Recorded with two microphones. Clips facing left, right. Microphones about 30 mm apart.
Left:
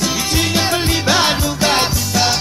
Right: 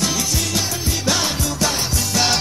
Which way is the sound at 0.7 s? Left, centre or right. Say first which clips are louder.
Left 7 dB; left.